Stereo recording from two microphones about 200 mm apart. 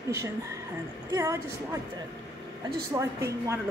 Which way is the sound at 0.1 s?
15° right (ahead or behind).